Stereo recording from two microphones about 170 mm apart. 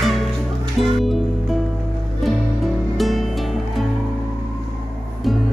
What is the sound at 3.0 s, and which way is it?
Music, centre (ahead or behind).